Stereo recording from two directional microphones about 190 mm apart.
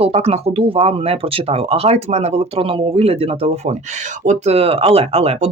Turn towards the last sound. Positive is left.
turn(degrees=-35)  # may be behind; listen again after turning